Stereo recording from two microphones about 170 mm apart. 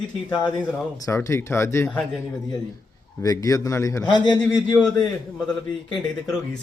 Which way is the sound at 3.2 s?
20° left (ahead or behind).